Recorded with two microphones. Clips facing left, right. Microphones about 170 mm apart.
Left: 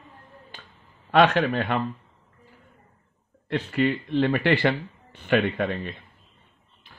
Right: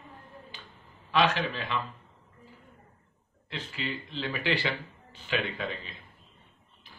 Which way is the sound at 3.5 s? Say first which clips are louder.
Left 13 dB; 60° left (ahead or behind).